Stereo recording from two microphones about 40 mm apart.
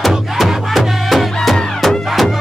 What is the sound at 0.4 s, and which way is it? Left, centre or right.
Music, centre.